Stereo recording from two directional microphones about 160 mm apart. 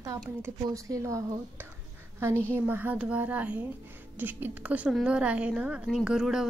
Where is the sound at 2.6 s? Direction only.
10° right (ahead or behind).